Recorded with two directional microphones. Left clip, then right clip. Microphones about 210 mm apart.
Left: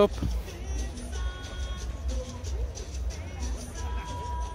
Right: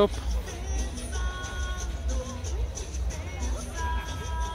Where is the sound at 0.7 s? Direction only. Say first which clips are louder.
Right 4 dB; 30° right (ahead or behind).